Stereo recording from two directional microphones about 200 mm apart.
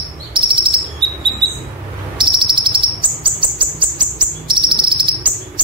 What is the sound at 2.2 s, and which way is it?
Bird, 25° right (ahead or behind).